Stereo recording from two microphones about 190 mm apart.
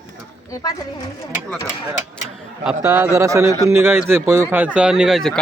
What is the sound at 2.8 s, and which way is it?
A man's voice, 15° right (ahead or behind).